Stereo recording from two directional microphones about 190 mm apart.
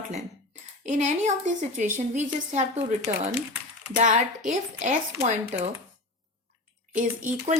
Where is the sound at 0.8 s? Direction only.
40° right (ahead or behind).